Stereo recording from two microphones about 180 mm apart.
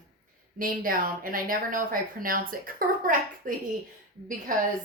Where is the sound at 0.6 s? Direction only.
50° right (ahead or behind).